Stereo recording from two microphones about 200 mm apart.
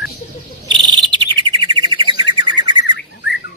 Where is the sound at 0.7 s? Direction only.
20° right (ahead or behind).